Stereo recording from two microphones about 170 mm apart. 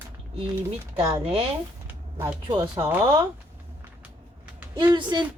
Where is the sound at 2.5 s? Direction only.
25° right (ahead or behind).